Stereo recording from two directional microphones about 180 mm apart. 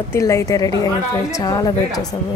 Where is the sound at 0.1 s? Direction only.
15° left (ahead or behind).